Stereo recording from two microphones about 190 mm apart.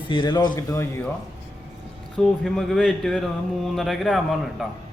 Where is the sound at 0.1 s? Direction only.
25° left (ahead or behind).